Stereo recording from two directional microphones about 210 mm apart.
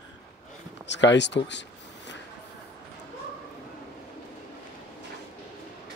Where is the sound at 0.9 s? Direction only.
55° left (ahead or behind).